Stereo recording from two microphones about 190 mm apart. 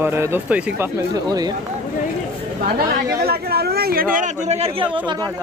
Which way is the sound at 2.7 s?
55° right (ahead or behind).